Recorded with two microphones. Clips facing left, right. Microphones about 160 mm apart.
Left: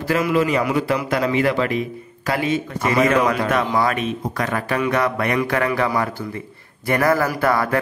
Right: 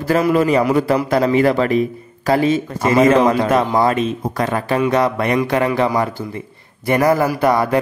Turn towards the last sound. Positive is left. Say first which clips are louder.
# right 4 dB
turn(degrees=-20)  # may be behind; listen again after turning